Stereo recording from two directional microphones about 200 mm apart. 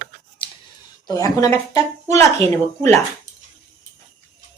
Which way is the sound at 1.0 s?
15° left (ahead or behind).